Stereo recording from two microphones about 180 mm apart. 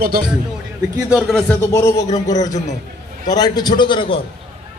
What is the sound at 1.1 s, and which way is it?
Speech, centre (ahead or behind).